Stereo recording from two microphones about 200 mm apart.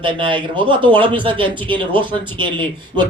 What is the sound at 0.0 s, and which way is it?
Speech, 25° right (ahead or behind).